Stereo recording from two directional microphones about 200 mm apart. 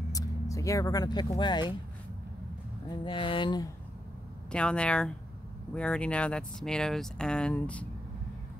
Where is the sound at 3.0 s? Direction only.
25° left (ahead or behind).